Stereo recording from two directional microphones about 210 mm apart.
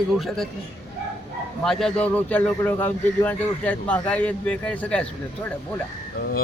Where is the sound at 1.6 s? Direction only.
Centre (ahead or behind).